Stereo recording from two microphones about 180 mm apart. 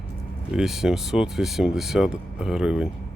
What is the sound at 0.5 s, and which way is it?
Speech, centre (ahead or behind).